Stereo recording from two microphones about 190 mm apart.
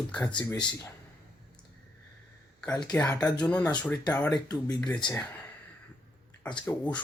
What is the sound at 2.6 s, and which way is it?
Speech, 5° left (ahead or behind).